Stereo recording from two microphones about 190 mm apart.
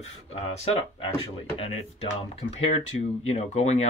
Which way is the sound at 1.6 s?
30° left (ahead or behind).